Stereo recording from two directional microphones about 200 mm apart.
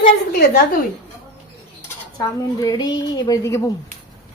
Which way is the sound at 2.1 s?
20° left (ahead or behind).